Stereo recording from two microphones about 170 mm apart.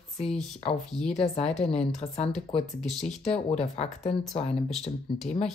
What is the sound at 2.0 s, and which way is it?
Speech, 40° left (ahead or behind).